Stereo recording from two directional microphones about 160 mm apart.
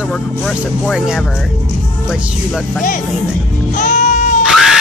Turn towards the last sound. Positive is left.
turn(degrees=-5)  # may be behind; listen again after turning